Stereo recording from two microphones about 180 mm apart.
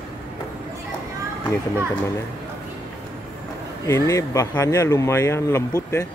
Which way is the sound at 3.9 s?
15° left (ahead or behind).